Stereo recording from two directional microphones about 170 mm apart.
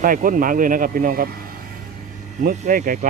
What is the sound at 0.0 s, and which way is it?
Speech, 55° right (ahead or behind).